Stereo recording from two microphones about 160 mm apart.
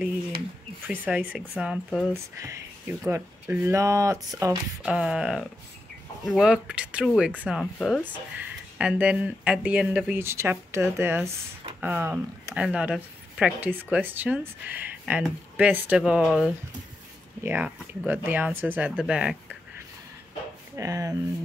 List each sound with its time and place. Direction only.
0.8 s speech: 10° right (ahead or behind)
2.3 s speech: 20° right (ahead or behind)
4.8 s speech: 5° right (ahead or behind)
20.7 s speech: 20° right (ahead or behind)